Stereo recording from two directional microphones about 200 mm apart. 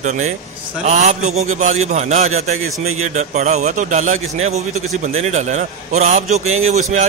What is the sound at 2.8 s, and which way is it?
Speech, 90° right.